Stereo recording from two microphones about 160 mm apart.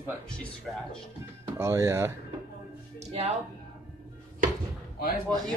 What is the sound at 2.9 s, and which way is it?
Speech, 40° right (ahead or behind).